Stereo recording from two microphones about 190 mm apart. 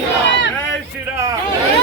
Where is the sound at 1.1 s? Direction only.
15° right (ahead or behind).